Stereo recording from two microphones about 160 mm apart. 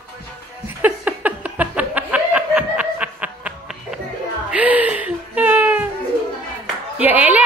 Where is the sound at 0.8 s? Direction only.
10° right (ahead or behind).